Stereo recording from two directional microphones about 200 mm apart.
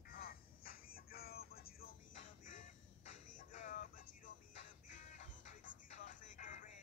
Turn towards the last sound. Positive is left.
turn(degrees=40)  # may be behind; listen again after turning